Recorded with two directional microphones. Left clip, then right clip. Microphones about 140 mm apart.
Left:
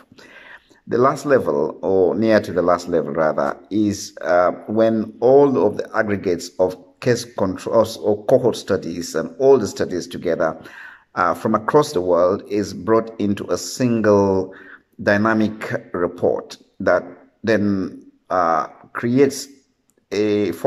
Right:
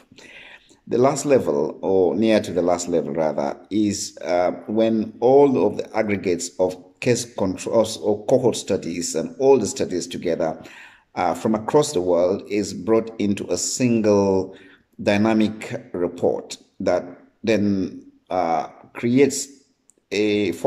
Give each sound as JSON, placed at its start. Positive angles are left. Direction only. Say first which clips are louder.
{"t": 0.8, "sound": "speech", "louder": "left 2 dB", "side_deg": -20}